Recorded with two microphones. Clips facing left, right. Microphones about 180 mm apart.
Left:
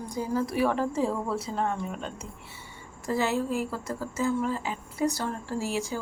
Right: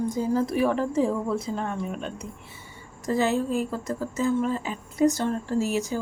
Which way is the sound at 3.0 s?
20° right (ahead or behind).